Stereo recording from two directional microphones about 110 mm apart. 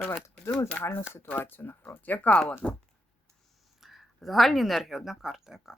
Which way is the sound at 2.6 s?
Centre (ahead or behind).